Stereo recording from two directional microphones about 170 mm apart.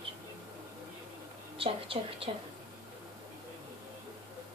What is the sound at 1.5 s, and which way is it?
Speech, 30° right (ahead or behind).